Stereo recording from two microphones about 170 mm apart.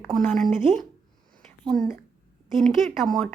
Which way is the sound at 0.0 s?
5° left (ahead or behind).